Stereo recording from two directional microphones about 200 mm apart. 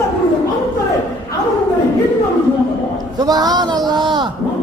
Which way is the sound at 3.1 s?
20° right (ahead or behind).